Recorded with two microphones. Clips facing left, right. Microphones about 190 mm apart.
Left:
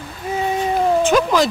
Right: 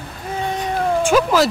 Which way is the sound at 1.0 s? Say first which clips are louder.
Right 4 dB; 10° right (ahead or behind).